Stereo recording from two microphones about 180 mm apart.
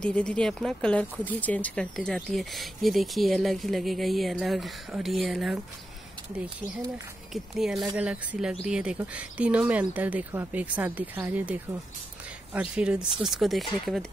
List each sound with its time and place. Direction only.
0.0 s speech: 5° left (ahead or behind)
7.5 s speech: centre (ahead or behind)